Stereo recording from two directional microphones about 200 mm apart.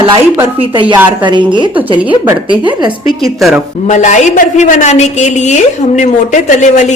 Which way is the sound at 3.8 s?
35° left (ahead or behind).